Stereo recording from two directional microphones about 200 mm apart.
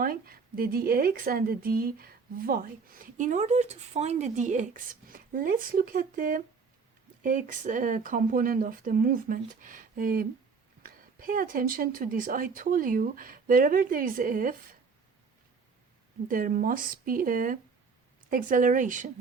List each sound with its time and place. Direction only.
0.0 s a woman's voice: 45° right (ahead or behind)
16.3 s a woman's voice: 45° right (ahead or behind)